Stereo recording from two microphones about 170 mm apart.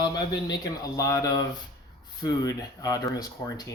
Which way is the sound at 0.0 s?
25° left (ahead or behind).